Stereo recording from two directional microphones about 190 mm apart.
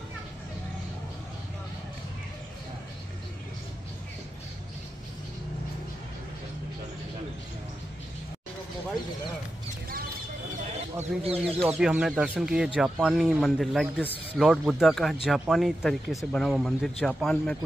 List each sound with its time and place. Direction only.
11.2 s speech: 30° right (ahead or behind)
11.8 s speech: 5° right (ahead or behind)